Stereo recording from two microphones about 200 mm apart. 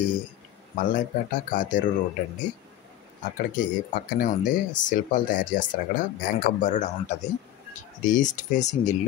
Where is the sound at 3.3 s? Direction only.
40° left (ahead or behind).